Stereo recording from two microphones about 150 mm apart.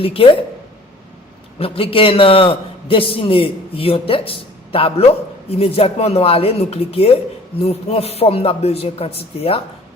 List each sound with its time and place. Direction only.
0.0 s a man's voice: 40° left (ahead or behind)
1.5 s a man's voice: 40° left (ahead or behind)